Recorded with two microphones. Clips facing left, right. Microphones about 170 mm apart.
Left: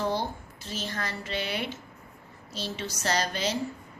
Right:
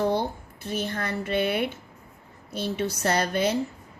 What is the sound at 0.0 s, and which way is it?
A woman's voice, 55° right (ahead or behind).